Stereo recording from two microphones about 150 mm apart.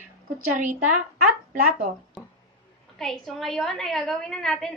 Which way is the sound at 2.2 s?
Centre (ahead or behind).